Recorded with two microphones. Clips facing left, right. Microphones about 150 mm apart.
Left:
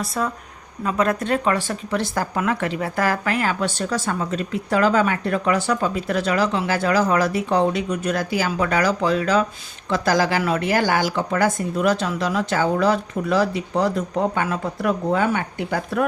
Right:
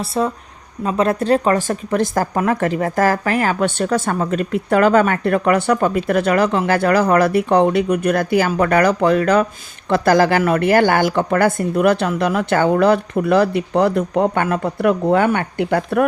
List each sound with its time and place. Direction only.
0.0 s speech: 30° right (ahead or behind); by 16.0 s 60° right (ahead or behind)